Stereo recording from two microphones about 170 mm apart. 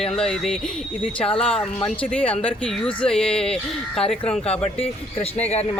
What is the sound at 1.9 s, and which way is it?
Speech, 30° left (ahead or behind).